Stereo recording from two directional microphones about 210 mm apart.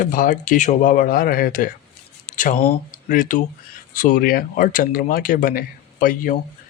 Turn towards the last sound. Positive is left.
turn(degrees=40)  # may be behind; listen again after turning